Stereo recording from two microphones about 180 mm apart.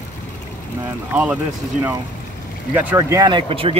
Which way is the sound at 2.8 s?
15° right (ahead or behind).